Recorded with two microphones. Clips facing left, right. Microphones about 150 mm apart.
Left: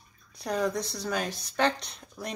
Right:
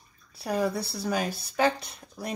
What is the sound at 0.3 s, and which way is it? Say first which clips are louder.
Speech: right 1 dB; 5° right (ahead or behind).